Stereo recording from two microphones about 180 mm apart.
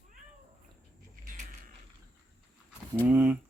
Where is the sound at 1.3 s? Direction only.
50° right (ahead or behind).